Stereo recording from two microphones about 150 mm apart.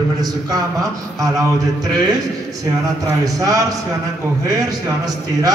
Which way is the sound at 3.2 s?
25° right (ahead or behind).